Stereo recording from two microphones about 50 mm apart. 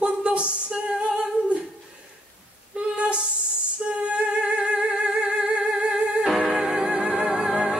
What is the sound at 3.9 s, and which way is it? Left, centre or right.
Music, right.